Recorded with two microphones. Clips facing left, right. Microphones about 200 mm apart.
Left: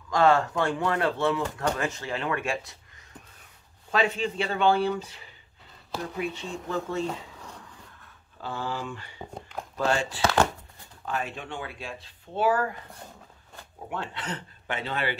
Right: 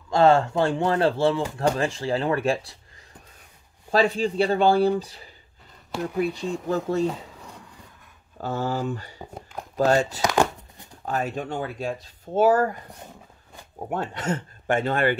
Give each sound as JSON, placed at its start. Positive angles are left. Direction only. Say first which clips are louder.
{"t": 0.1, "sound": "speech", "louder": "right 4 dB", "side_deg": -30}
{"t": 3.9, "sound": "speech", "louder": "right 5 dB", "side_deg": -35}
{"t": 7.1, "sound": "a sound", "louder": "right 4 dB", "side_deg": -10}
{"t": 8.4, "sound": "speech", "louder": "right 6 dB", "side_deg": -45}
{"t": 10.2, "sound": "speech", "louder": "left 3 dB", "side_deg": -15}
{"t": 11.1, "sound": "speech", "louder": "right 5 dB", "side_deg": -40}
{"t": 13.7, "sound": "speech", "louder": "right 6 dB", "side_deg": -45}